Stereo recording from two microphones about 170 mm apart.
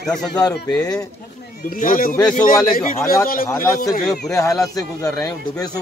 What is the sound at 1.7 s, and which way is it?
A man's voice, 55° left (ahead or behind).